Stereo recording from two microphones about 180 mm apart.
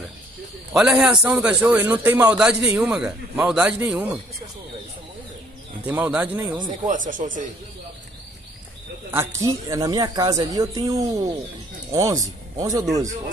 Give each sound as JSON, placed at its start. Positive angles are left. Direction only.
{"t": 0.7, "sound": "a man's voice", "side_deg": -5}
{"t": 5.9, "sound": "a man's voice", "side_deg": -10}
{"t": 6.5, "sound": "speech", "side_deg": -25}
{"t": 7.1, "sound": "a man's voice", "side_deg": -45}
{"t": 9.1, "sound": "speech", "side_deg": -15}